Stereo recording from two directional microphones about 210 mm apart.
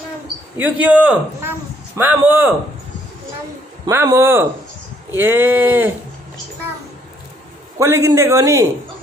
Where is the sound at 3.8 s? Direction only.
15° right (ahead or behind).